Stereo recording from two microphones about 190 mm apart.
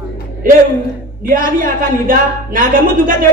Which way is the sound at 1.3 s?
45° right (ahead or behind).